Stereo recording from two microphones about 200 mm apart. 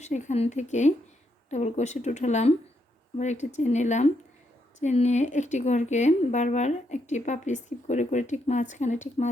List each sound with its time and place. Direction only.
0.0 s a woman's voice: 35° left (ahead or behind)